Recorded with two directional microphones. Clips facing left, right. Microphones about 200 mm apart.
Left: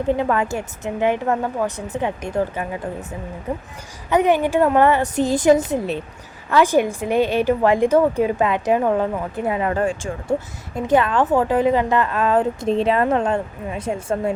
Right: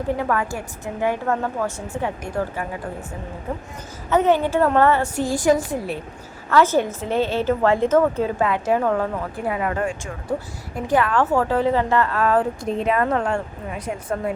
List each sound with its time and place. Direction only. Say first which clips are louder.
0.2 s a woman's voice: left 3 dB; 20° left (ahead or behind)
4.1 s a woman's voice: left 1 dB; 15° left (ahead or behind)